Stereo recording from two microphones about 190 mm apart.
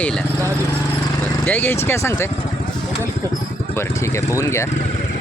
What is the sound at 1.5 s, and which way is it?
Speech, 10° left (ahead or behind).